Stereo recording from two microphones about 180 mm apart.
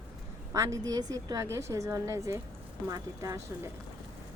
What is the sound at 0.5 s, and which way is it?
A woman's voice, 20° right (ahead or behind).